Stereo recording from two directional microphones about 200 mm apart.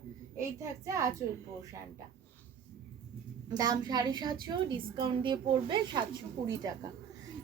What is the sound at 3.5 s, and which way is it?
A woman's voice, 20° right (ahead or behind).